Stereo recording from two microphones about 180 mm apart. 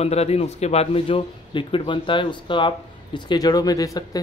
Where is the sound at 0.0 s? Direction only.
35° left (ahead or behind).